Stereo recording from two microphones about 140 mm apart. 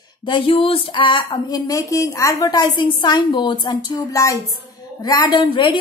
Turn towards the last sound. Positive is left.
turn(degrees=35)  # may be behind; listen again after turning